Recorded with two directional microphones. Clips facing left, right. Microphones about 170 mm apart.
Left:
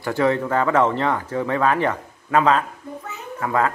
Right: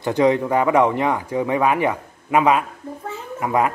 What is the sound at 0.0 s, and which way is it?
Speech, 20° right (ahead or behind).